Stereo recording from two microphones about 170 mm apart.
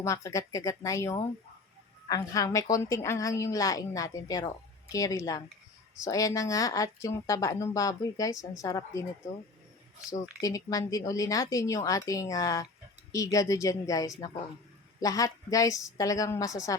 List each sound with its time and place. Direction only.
0.0 s a woman's voice: 20° left (ahead or behind)
10.4 s a woman's voice: 20° left (ahead or behind)